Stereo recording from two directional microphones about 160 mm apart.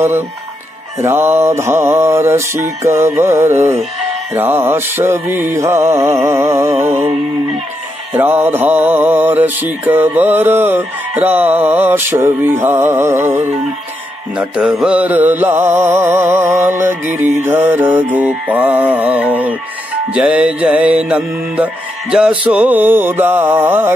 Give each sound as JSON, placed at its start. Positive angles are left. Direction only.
{"t": 1.0, "sound": "music", "side_deg": -15}
{"t": 8.2, "sound": "music", "side_deg": -15}
{"t": 14.4, "sound": "music", "side_deg": -5}